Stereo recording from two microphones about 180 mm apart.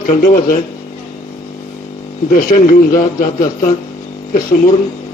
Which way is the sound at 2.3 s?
45° left (ahead or behind).